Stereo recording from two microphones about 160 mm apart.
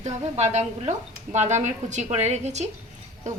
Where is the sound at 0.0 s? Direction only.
45° right (ahead or behind).